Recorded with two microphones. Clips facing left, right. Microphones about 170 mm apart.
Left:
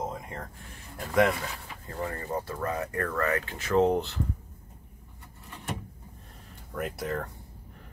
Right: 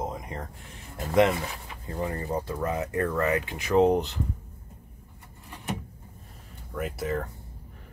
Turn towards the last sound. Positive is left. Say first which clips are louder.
# right 2 dB
turn(degrees=0)  # may be behind; listen again after turning